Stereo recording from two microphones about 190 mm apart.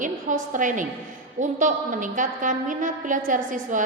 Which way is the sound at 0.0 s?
45° right (ahead or behind).